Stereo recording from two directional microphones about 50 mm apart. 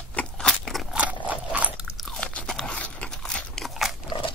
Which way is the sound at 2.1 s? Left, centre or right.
Left.